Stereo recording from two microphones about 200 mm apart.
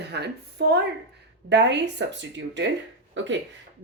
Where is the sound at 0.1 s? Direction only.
60° right (ahead or behind).